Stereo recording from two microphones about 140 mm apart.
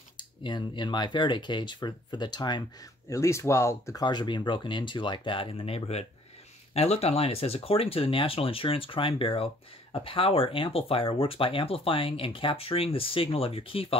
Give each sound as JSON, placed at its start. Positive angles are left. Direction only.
{"t": 0.2, "sound": "speech", "side_deg": 35}
{"t": 3.1, "sound": "speech", "side_deg": 20}
{"t": 4.0, "sound": "speech", "side_deg": 30}